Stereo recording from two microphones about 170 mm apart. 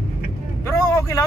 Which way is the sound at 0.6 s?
15° left (ahead or behind).